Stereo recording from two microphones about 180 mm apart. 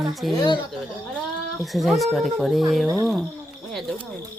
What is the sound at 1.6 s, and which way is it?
Speech, centre (ahead or behind).